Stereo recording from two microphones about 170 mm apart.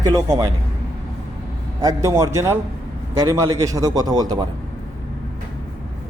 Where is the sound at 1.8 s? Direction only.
20° right (ahead or behind).